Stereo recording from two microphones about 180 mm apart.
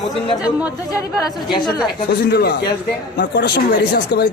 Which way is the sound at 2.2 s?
65° left (ahead or behind).